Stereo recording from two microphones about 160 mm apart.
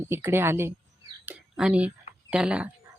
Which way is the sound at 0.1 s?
15° right (ahead or behind).